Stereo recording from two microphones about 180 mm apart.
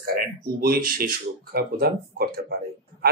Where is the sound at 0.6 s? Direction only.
55° right (ahead or behind).